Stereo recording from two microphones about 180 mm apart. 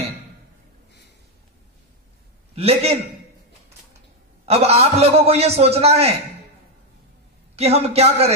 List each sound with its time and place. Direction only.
2.5 s a man's voice: 35° right (ahead or behind)
4.5 s a man's voice: 35° right (ahead or behind)
7.5 s a man's voice: 35° right (ahead or behind)